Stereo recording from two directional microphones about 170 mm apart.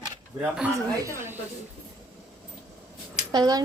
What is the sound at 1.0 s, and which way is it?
Speech, 15° right (ahead or behind).